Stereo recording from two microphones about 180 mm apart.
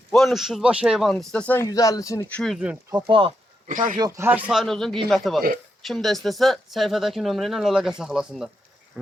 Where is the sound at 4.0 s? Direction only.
15° right (ahead or behind).